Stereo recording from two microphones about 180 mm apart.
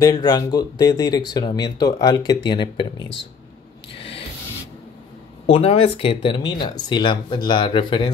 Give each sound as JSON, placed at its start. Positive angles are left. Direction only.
{"t": 0.0, "sound": "speech", "side_deg": 20}
{"t": 3.9, "sound": "rub", "side_deg": 30}
{"t": 5.5, "sound": "speech", "side_deg": 35}